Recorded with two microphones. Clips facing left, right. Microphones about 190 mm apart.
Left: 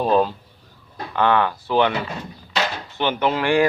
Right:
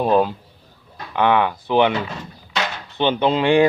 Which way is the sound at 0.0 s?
10° right (ahead or behind).